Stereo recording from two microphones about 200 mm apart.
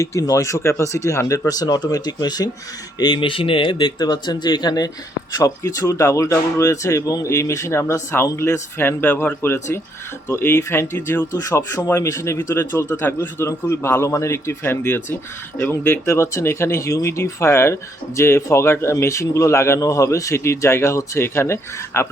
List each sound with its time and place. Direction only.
0.0 s speech: 15° left (ahead or behind)